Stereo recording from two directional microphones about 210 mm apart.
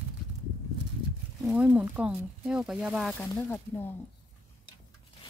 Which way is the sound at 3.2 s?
10° left (ahead or behind).